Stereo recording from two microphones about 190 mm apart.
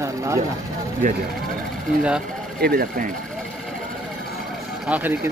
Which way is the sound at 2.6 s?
55° right (ahead or behind).